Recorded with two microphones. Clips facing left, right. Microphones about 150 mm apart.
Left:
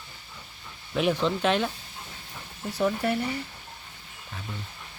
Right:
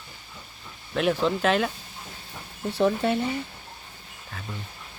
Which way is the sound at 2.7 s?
25° right (ahead or behind).